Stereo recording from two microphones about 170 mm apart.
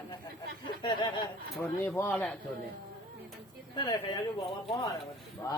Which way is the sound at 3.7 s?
25° left (ahead or behind).